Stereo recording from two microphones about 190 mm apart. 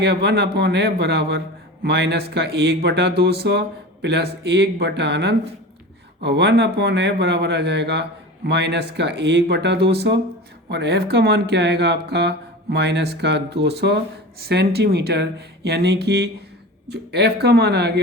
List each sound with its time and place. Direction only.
0.0 s speech: 60° right (ahead or behind)